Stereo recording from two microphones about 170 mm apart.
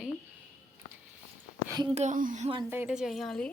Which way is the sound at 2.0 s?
50° right (ahead or behind).